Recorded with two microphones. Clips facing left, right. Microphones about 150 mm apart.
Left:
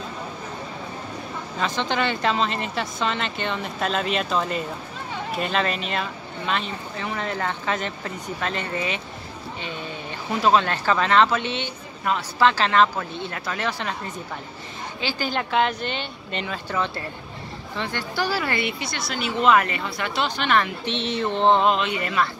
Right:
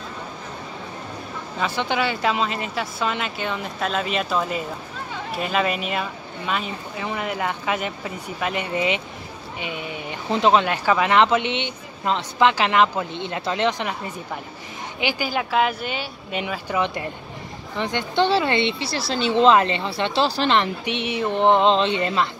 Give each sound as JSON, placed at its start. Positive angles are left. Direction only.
{"t": 1.8, "sound": "a woman's voice", "side_deg": -10}
{"t": 15.0, "sound": "a woman's voice", "side_deg": -15}
{"t": 20.8, "sound": "speech", "side_deg": -15}
{"t": 21.7, "sound": "a woman's voice", "side_deg": -30}